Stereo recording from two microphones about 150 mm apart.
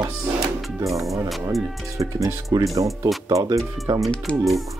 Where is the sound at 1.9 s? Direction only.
20° right (ahead or behind).